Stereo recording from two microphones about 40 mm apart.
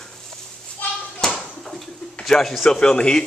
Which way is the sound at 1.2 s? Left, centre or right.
Centre.